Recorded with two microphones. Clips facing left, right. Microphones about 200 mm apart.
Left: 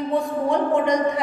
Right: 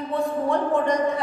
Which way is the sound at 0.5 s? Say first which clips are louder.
Left 3 dB; 15° left (ahead or behind).